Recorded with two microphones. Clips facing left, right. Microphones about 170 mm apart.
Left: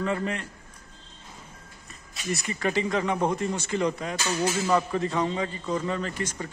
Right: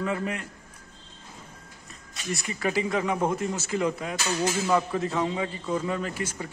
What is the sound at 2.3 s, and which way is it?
Speech, 5° right (ahead or behind).